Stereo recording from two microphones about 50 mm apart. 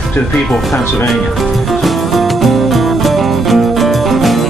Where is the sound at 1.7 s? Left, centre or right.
Centre.